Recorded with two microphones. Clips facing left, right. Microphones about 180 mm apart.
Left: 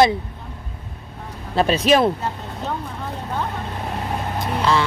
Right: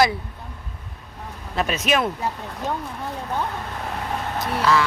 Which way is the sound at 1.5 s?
30° left (ahead or behind).